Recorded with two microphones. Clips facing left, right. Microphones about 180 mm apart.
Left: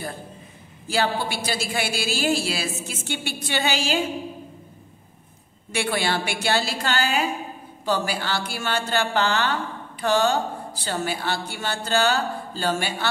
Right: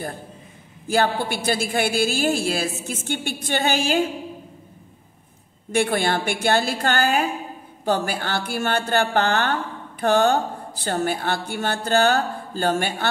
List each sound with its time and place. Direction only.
0.8 s a woman's voice: 50° right (ahead or behind)
5.7 s a woman's voice: 50° right (ahead or behind)